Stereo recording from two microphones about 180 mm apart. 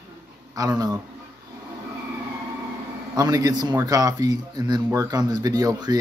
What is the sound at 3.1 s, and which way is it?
Speech, 20° right (ahead or behind).